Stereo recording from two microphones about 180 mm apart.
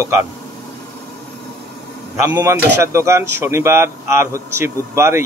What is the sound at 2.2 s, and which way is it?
Speech, 15° right (ahead or behind).